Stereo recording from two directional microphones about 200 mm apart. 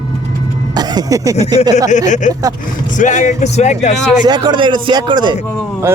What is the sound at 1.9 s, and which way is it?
Speech, 35° left (ahead or behind).